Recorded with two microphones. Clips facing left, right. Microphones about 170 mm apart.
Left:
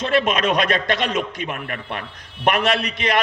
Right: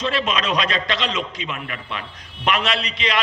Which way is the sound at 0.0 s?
55° left (ahead or behind).